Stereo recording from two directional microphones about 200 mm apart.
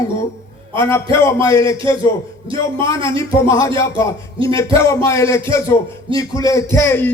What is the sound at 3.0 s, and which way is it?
A man's voice, 15° left (ahead or behind).